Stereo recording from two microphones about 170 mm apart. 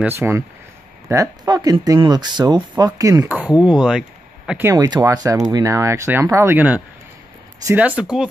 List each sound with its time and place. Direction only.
0.0 s speech: 15° right (ahead or behind)
3.3 s speech: 5° right (ahead or behind)